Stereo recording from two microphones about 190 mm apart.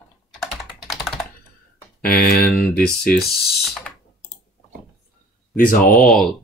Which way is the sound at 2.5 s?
55° left (ahead or behind).